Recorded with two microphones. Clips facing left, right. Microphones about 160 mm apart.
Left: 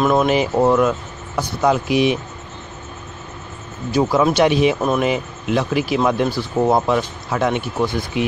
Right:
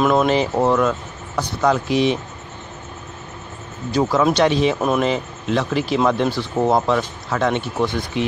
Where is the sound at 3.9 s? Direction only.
10° left (ahead or behind).